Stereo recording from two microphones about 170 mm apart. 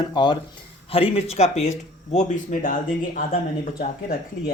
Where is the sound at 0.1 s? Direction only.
25° left (ahead or behind).